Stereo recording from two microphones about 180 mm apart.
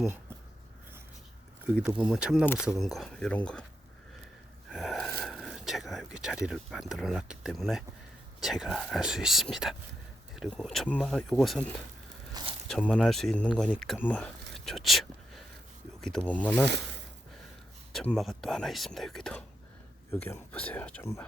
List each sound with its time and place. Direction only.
1.8 s speech: 10° right (ahead or behind); by 3.7 s 5° left (ahead or behind)
4.7 s gasp: centre (ahead or behind)
6.1 s speech: 5° right (ahead or behind)
12.3 s a sound: 25° right (ahead or behind)
12.6 s speech: 5° left (ahead or behind)
16.0 s speech: 5° left (ahead or behind)
17.9 s speech: 5° left (ahead or behind)